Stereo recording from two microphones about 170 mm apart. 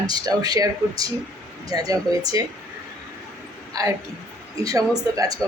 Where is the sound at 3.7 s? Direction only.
20° right (ahead or behind).